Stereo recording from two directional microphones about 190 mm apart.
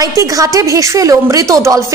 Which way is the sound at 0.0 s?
15° right (ahead or behind).